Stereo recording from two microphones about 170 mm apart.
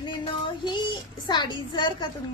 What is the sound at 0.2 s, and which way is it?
Child singing, 25° left (ahead or behind).